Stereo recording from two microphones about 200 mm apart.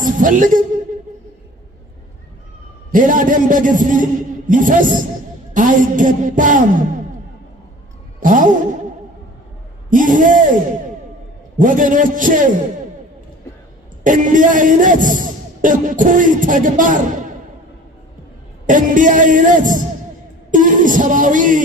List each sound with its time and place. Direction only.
0.0 s a man's voice: 40° right (ahead or behind)
2.9 s a man's voice: 40° right (ahead or behind)
8.2 s a sound: 40° right (ahead or behind)
9.9 s a man's voice: 40° right (ahead or behind)
11.5 s a man's voice: 40° right (ahead or behind)
14.0 s a man's voice: 40° right (ahead or behind)
18.6 s a man's voice: 40° right (ahead or behind)